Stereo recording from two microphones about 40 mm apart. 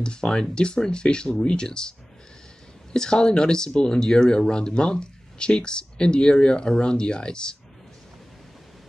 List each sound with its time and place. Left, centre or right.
0.0 s speech: left